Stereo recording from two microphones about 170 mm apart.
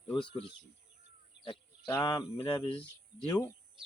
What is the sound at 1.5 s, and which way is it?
Speech, 25° left (ahead or behind).